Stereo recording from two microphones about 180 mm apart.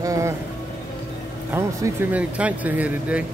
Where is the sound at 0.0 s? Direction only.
15° right (ahead or behind).